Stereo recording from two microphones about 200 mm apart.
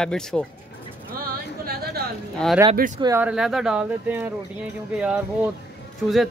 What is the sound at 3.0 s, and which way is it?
Speech, 10° right (ahead or behind).